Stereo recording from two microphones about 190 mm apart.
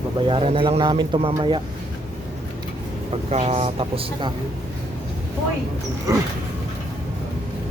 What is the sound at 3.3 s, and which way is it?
Speech, 30° right (ahead or behind).